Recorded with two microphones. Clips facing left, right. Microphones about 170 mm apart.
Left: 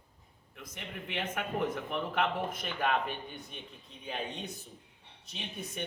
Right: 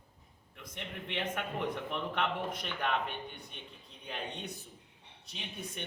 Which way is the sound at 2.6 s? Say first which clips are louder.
Left 4 dB; 5° left (ahead or behind).